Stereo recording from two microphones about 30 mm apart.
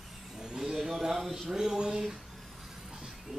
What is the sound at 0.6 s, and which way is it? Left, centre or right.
Speech, centre.